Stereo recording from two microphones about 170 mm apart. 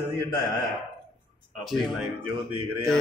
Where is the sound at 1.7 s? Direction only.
5° left (ahead or behind).